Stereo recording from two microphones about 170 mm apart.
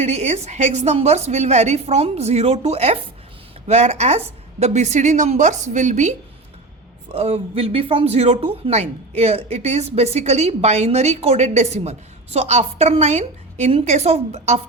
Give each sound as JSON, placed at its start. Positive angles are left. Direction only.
{"t": 0.0, "sound": "a woman's voice", "side_deg": -40}